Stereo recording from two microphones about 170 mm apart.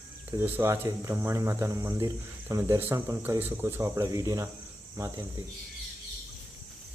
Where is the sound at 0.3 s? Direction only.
15° right (ahead or behind).